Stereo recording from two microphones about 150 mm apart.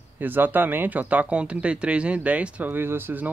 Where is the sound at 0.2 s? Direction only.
10° right (ahead or behind).